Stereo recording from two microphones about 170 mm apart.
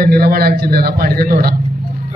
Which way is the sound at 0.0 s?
60° right (ahead or behind).